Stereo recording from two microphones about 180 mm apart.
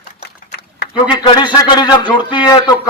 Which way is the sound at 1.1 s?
25° left (ahead or behind).